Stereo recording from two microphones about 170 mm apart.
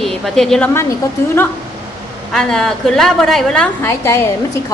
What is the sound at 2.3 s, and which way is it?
A woman's voice, 5° left (ahead or behind).